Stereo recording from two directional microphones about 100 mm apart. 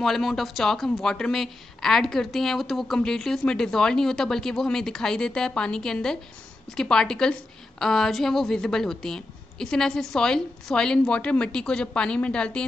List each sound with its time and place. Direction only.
0.0 s a woman's voice: 5° left (ahead or behind)